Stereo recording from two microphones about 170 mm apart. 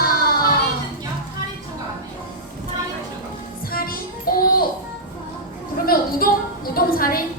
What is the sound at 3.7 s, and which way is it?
Music, 60° left (ahead or behind).